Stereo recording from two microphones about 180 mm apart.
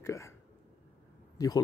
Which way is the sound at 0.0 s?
15° left (ahead or behind).